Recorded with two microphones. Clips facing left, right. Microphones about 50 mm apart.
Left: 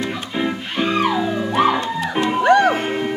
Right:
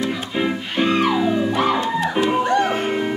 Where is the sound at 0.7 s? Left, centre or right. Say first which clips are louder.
Right 1 dB; centre.